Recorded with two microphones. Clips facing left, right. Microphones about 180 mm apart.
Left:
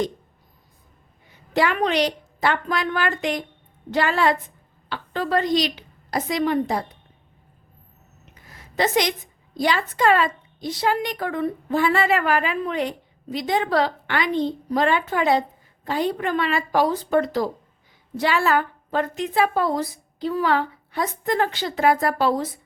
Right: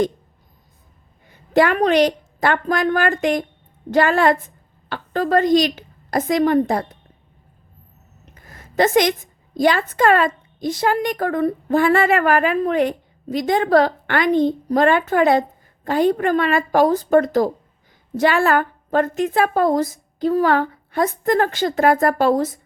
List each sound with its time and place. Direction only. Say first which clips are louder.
1.3 s a woman's voice: right 6 dB; 50° right (ahead or behind)
8.4 s a sound: right 5 dB; 50° right (ahead or behind)
9.6 s speech: right 5 dB; 50° right (ahead or behind)